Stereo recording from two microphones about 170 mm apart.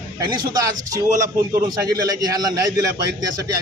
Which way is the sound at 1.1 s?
55° right (ahead or behind).